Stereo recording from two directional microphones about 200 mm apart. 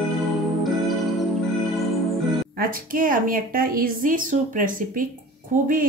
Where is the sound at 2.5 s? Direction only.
45° right (ahead or behind).